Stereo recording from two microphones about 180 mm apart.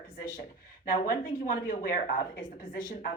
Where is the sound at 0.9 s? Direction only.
50° left (ahead or behind).